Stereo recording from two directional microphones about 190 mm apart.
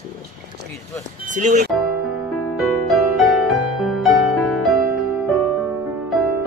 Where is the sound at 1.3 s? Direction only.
40° right (ahead or behind).